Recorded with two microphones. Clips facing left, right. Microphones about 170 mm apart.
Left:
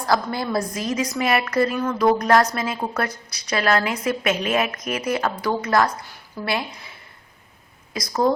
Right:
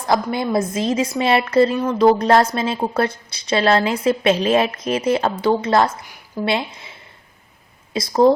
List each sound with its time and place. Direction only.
0.0 s a woman's voice: 20° right (ahead or behind)
7.9 s a woman's voice: 30° right (ahead or behind)